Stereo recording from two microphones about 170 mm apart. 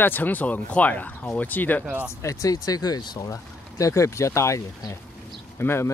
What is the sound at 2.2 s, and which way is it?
Speech, 20° left (ahead or behind).